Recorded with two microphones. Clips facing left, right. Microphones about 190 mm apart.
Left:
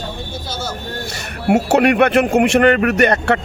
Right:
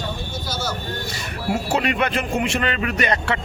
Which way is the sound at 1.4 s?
70° left (ahead or behind).